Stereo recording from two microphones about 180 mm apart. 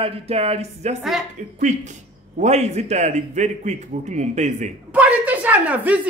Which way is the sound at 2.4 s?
40° right (ahead or behind).